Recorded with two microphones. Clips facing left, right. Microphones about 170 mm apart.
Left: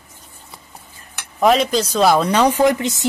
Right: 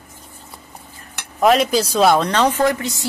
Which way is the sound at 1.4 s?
Centre (ahead or behind).